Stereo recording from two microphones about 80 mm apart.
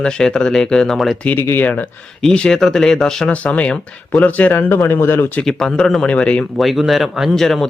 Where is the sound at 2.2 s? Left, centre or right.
Centre; by 5.3 s left.